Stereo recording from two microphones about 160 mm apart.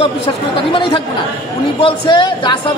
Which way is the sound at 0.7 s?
30° left (ahead or behind).